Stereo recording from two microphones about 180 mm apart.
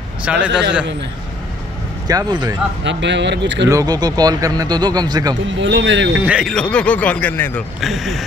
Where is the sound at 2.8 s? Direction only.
75° right (ahead or behind).